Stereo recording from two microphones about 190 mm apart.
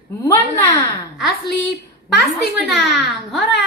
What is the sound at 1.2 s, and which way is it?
A woman's voice, centre (ahead or behind).